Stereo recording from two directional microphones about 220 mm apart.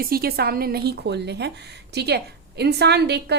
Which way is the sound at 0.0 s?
45° right (ahead or behind).